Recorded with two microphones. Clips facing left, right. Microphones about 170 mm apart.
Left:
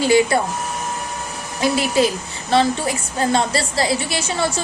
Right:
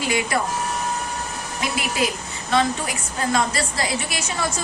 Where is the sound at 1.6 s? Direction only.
30° left (ahead or behind).